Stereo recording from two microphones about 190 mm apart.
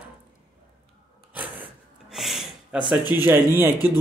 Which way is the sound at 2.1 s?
Centre (ahead or behind).